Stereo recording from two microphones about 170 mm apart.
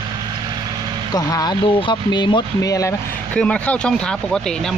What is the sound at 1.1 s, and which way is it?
Speech, 20° left (ahead or behind).